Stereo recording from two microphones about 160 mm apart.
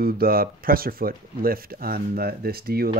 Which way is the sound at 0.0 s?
70° right (ahead or behind).